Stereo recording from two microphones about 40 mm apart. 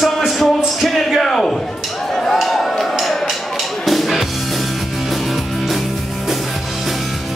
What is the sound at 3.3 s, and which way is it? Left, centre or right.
Music, centre.